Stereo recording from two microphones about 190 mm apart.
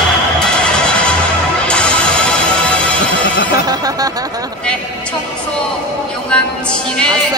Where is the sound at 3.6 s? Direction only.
20° right (ahead or behind).